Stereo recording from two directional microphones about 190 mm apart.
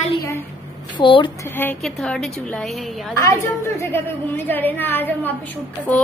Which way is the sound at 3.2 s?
15° left (ahead or behind).